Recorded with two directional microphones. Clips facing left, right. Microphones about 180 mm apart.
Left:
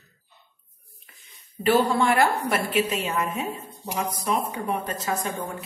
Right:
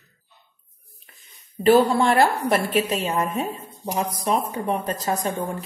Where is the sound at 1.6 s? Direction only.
35° right (ahead or behind).